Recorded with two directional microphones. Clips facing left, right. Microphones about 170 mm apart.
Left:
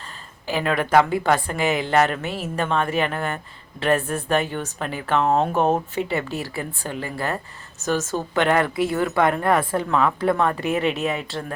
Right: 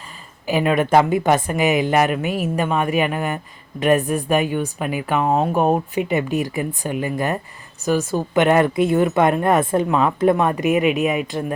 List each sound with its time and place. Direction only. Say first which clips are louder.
0.4 s speech: right 5 dB; 15° right (ahead or behind)